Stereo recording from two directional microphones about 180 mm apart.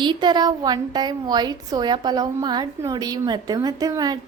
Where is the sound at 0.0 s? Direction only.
25° right (ahead or behind).